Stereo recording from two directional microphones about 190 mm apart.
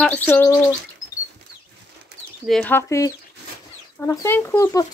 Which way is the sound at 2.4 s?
5° left (ahead or behind).